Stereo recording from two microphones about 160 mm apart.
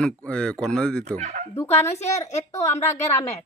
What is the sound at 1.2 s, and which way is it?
Speech, 45° right (ahead or behind).